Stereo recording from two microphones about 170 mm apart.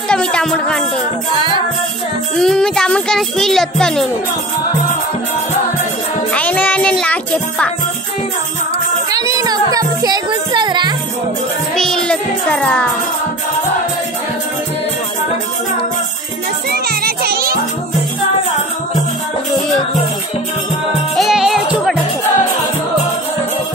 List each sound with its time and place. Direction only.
0.1 s a child's voice: 5° left (ahead or behind)
2.3 s a child's voice: 5° left (ahead or behind)
6.3 s music: 10° left (ahead or behind)
9.1 s speech: 20° right (ahead or behind)
11.7 s music: 5° left (ahead or behind)
16.7 s music: 65° right (ahead or behind)
21.2 s music: 5° right (ahead or behind)